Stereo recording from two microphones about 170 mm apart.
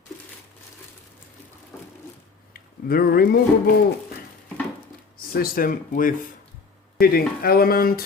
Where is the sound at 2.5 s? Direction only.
60° left (ahead or behind).